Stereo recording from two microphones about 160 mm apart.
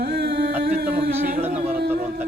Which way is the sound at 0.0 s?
90° right.